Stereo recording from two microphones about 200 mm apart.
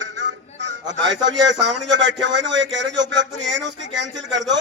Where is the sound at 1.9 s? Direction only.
65° right (ahead or behind).